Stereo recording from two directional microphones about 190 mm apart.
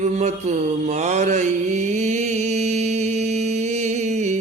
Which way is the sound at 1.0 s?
40° right (ahead or behind).